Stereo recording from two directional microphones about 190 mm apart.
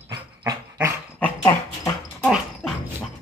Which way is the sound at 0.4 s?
15° right (ahead or behind).